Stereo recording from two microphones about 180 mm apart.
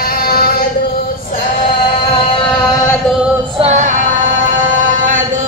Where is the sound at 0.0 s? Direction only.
60° left (ahead or behind).